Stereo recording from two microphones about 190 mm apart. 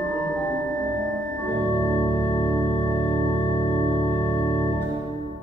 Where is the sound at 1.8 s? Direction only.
15° left (ahead or behind).